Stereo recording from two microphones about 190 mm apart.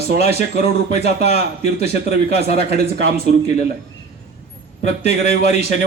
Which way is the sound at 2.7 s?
35° left (ahead or behind).